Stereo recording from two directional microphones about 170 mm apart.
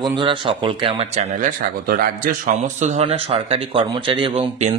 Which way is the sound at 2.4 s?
45° right (ahead or behind).